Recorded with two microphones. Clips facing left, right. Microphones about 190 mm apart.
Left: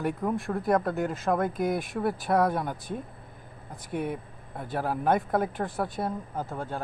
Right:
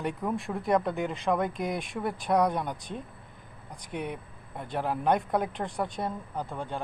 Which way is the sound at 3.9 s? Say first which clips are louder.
Left 4 dB; 45° left (ahead or behind).